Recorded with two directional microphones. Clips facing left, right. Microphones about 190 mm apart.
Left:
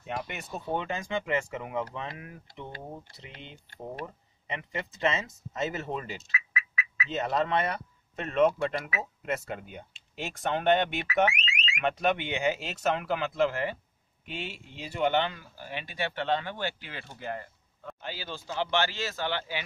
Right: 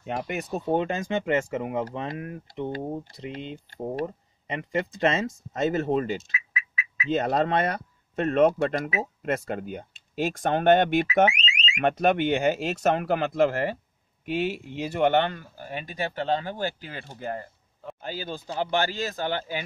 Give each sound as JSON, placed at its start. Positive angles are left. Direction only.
{"t": 0.0, "sound": "speech", "side_deg": -45}
{"t": 0.5, "sound": "speech", "side_deg": -35}
{"t": 7.2, "sound": "speech", "side_deg": -45}
{"t": 11.2, "sound": "alarm", "side_deg": -20}
{"t": 11.8, "sound": "speech", "side_deg": -50}